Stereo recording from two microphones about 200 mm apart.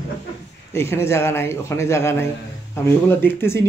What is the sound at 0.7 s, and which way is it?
Speech, 10° left (ahead or behind).